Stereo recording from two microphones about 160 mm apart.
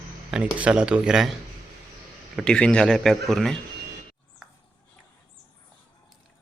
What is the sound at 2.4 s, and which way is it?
Speech, 5° left (ahead or behind).